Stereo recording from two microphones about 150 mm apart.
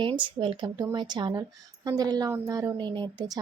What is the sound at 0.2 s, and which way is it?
A woman's voice, 30° right (ahead or behind).